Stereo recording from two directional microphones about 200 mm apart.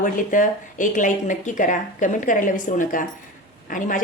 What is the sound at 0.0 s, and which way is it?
A woman's voice, 40° left (ahead or behind).